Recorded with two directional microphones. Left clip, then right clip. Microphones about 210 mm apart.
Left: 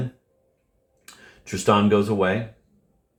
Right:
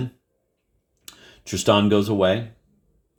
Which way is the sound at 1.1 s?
45° right (ahead or behind).